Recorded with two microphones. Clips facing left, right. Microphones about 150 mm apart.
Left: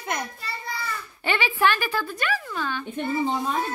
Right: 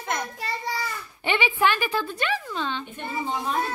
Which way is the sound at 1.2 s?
20° right (ahead or behind).